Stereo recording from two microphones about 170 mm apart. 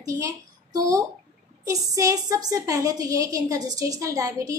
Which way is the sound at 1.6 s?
20° right (ahead or behind).